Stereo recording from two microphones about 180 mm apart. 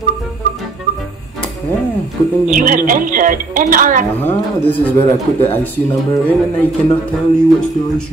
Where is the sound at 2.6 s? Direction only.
50° right (ahead or behind).